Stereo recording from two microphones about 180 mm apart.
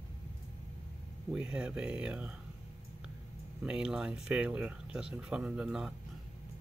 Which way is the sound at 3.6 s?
5° right (ahead or behind).